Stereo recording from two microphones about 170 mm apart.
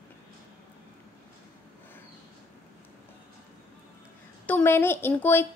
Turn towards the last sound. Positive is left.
turn(degrees=15)  # may be behind; listen again after turning